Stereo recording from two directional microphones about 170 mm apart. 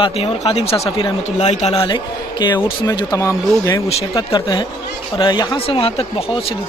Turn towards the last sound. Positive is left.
turn(degrees=30)  # may be behind; listen again after turning